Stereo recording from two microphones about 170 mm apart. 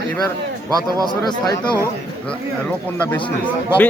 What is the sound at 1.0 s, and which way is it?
Speech, 25° left (ahead or behind).